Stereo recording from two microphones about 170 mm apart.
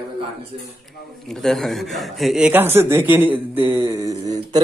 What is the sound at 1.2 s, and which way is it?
A man's voice, centre (ahead or behind).